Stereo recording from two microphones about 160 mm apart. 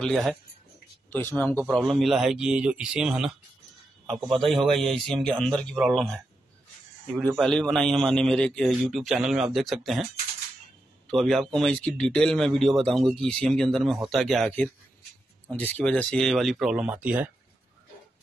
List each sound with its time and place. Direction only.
0.0 s speech: 5° left (ahead or behind)
4.5 s speech: centre (ahead or behind)
11.1 s speech: centre (ahead or behind)